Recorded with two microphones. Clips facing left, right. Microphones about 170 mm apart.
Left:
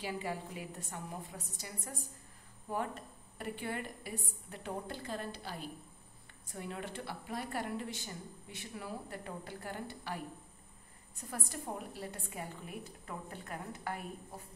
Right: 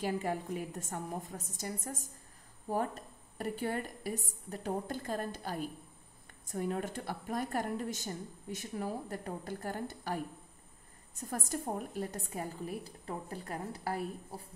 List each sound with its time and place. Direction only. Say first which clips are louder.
0.0 s a woman's voice: right 5 dB; 50° right (ahead or behind)